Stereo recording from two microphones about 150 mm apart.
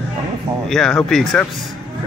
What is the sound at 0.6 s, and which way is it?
Speech, 5° left (ahead or behind).